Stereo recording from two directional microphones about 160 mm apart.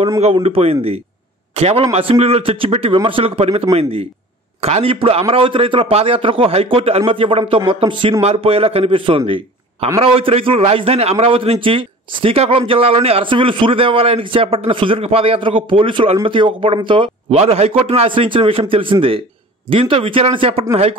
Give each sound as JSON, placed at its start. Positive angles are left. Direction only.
{"t": 0.2, "sound": "a man's voice", "side_deg": -40}